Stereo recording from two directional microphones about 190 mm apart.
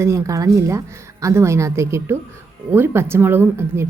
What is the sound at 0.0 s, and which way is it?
A woman's voice, 15° right (ahead or behind).